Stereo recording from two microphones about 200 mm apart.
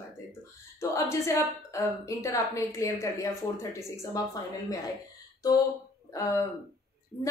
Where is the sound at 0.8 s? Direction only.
15° left (ahead or behind).